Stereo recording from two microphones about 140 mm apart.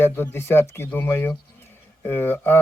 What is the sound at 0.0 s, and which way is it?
Speech, 15° left (ahead or behind).